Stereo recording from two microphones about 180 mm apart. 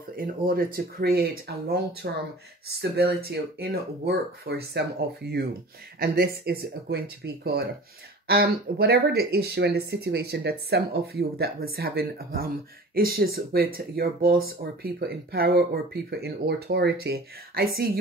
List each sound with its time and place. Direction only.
0.1 s speech: 55° right (ahead or behind)
8.3 s speech: 60° right (ahead or behind)